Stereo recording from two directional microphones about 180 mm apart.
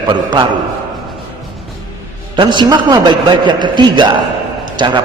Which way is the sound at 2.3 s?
25° right (ahead or behind).